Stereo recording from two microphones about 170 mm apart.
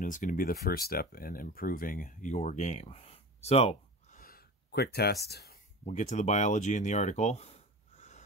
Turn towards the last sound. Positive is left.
turn(degrees=40)  # may be behind; listen again after turning